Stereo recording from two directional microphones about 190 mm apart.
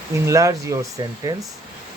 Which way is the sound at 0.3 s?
15° right (ahead or behind).